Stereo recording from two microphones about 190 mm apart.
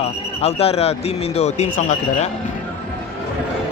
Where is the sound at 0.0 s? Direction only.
30° left (ahead or behind).